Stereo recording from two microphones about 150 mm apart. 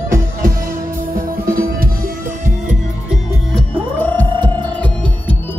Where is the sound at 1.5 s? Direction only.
75° right (ahead or behind).